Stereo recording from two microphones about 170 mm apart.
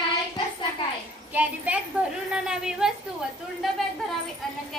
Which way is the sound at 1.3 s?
10° right (ahead or behind).